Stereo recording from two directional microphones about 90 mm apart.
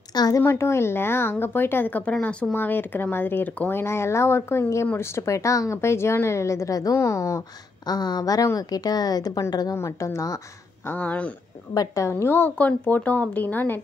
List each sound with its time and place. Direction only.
0.1 s a sound: 50° left (ahead or behind)
0.4 s a woman's voice: 30° left (ahead or behind)
7.9 s a woman's voice: 50° left (ahead or behind); by 10.3 s 35° left (ahead or behind)
10.9 s speech: 15° left (ahead or behind)
11.7 s speech: 40° left (ahead or behind); by 13.7 s 20° left (ahead or behind)